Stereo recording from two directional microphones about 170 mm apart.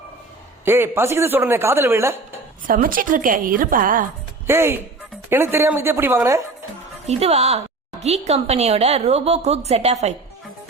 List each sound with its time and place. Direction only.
0.6 s speech: 15° right (ahead or behind)
2.6 s a woman's voice: 55° right (ahead or behind)
4.4 s speech: 15° right (ahead or behind)
7.1 s a woman's voice: 40° right (ahead or behind)